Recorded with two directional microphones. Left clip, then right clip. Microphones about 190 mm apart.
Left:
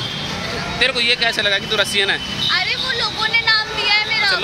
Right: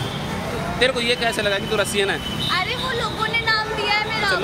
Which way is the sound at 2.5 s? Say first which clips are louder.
Left 2 dB; 15° right (ahead or behind).